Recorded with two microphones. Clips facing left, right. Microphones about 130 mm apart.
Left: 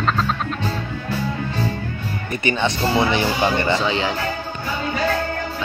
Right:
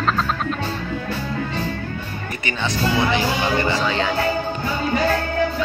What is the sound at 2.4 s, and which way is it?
Speech, 25° left (ahead or behind).